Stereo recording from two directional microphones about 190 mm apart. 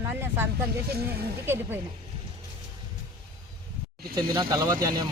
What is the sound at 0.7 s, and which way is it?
Speech, 55° right (ahead or behind).